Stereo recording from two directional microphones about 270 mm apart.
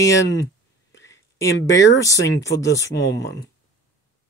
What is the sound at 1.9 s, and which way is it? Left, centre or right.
Speech, centre.